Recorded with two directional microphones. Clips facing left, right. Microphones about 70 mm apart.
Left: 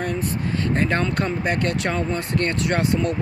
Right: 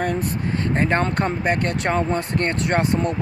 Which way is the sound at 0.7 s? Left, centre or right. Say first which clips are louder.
Right 2 dB; right.